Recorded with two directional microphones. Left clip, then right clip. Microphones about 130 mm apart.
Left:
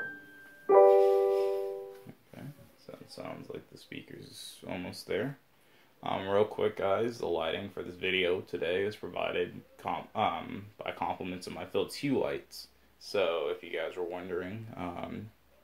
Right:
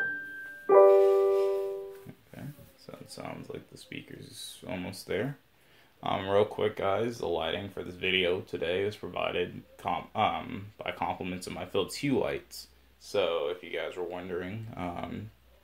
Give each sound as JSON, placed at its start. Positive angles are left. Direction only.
{"t": 0.7, "sound": "music", "side_deg": -5}
{"t": 2.9, "sound": "a sound", "side_deg": -25}
{"t": 3.5, "sound": "speech", "side_deg": -25}
{"t": 4.2, "sound": "speech", "side_deg": 0}
{"t": 5.9, "sound": "speech", "side_deg": -20}
{"t": 13.0, "sound": "speech", "side_deg": 0}